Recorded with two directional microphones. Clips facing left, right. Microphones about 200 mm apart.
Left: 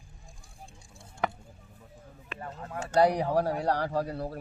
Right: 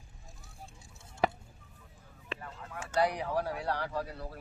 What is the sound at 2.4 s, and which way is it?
Speech, 40° left (ahead or behind).